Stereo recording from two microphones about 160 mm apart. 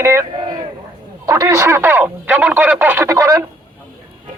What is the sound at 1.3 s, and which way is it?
Speech, 20° right (ahead or behind).